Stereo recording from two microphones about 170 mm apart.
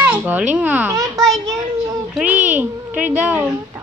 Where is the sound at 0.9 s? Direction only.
20° right (ahead or behind).